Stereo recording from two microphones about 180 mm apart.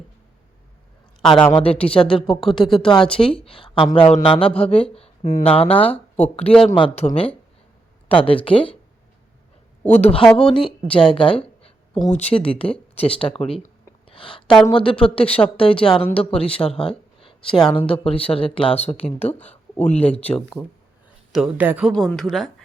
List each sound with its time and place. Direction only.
1.2 s a woman's voice: 5° left (ahead or behind)
1.5 s speech: 30° left (ahead or behind)
2.2 s a woman's voice: centre (ahead or behind)
2.9 s speech: 30° left (ahead or behind)
5.9 s speech: 10° left (ahead or behind)
6.7 s speech: 35° left (ahead or behind)
9.9 s speech: 35° left (ahead or behind)
10.2 s a woman's voice: 5° left (ahead or behind)
10.5 s speech: 30° left (ahead or behind)
14.1 s a sound: 30° left (ahead or behind)
14.4 s a woman's voice: centre (ahead or behind)
14.7 s speech: 30° left (ahead or behind)
19.3 s a woman's voice: 10° left (ahead or behind); by 21.9 s 5° right (ahead or behind)
21.9 s a woman's voice: 5° left (ahead or behind)